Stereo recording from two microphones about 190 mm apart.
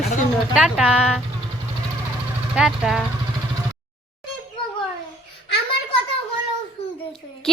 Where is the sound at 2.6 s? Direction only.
Centre (ahead or behind).